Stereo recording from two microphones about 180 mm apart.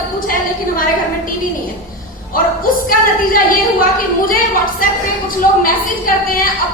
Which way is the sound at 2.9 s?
50° left (ahead or behind).